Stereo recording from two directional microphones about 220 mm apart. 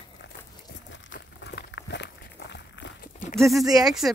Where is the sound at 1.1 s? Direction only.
50° left (ahead or behind).